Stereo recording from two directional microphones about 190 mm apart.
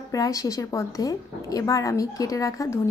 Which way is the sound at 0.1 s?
15° left (ahead or behind).